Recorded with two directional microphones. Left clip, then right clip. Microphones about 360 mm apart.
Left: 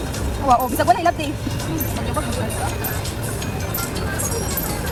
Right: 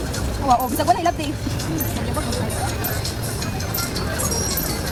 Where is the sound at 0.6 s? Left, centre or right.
Centre.